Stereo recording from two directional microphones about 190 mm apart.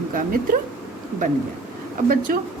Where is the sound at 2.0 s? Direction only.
50° right (ahead or behind).